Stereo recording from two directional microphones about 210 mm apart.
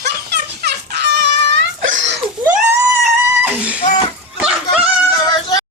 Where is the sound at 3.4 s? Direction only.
5° right (ahead or behind).